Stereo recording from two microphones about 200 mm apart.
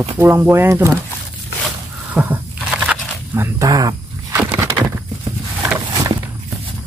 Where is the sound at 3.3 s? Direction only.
15° right (ahead or behind).